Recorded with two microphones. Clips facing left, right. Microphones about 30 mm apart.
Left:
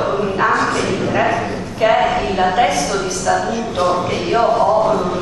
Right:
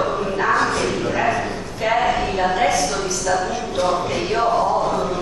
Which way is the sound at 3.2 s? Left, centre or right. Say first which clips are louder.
Left 4 dB; left.